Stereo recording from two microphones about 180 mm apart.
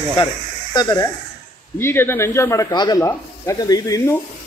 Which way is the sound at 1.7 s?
10° left (ahead or behind).